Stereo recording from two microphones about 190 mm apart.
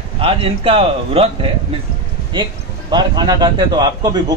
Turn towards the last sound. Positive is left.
turn(degrees=-20)  # may be behind; listen again after turning